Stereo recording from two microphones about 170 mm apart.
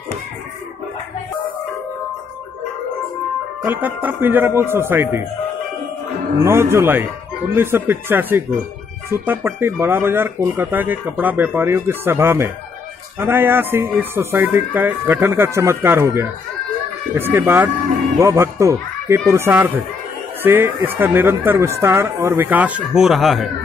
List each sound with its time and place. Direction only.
3.6 s speech: 10° right (ahead or behind)
6.4 s speech: 15° right (ahead or behind)